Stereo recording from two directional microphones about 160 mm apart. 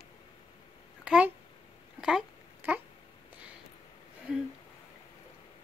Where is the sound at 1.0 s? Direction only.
5° right (ahead or behind).